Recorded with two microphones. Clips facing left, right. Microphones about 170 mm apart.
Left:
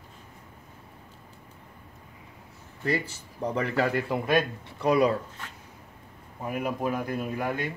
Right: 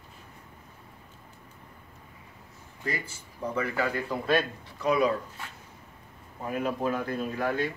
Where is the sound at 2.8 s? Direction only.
35° left (ahead or behind).